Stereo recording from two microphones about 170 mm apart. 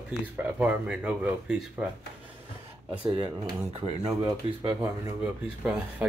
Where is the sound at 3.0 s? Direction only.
25° right (ahead or behind).